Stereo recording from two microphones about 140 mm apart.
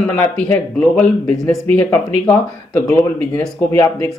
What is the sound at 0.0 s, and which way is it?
Speech, 10° left (ahead or behind).